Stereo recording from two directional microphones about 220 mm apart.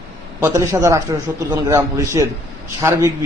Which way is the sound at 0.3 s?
15° right (ahead or behind).